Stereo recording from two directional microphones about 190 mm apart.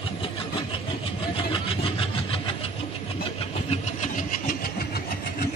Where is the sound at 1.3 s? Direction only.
30° left (ahead or behind).